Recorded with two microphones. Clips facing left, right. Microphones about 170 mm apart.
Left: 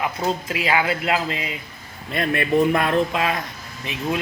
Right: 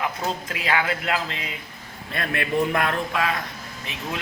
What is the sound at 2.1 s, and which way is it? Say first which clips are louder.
Speech: left 5 dB; 20° left (ahead or behind).